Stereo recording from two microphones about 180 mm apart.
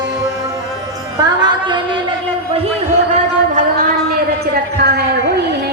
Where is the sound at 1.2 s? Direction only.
25° right (ahead or behind).